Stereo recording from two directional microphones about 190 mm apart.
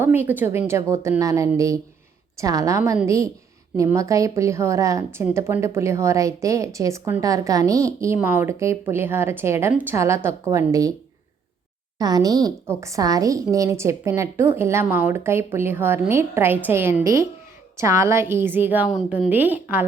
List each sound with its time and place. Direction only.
0.0 s a woman's voice: 10° right (ahead or behind)
11.9 s a woman's voice: 20° right (ahead or behind)